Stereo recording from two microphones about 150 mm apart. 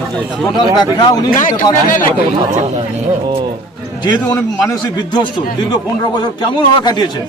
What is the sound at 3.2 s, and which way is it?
Speech, 30° right (ahead or behind).